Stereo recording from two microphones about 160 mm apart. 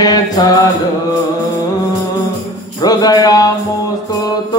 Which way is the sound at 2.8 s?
25° left (ahead or behind).